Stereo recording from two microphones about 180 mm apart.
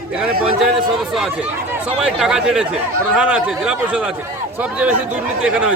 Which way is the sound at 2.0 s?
5° right (ahead or behind).